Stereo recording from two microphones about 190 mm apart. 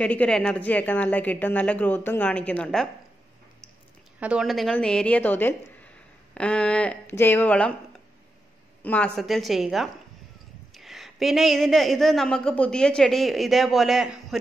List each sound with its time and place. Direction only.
0.0 s speech: 5° left (ahead or behind)
4.2 s a woman's voice: 5° right (ahead or behind)
8.8 s a woman's voice: 5° left (ahead or behind)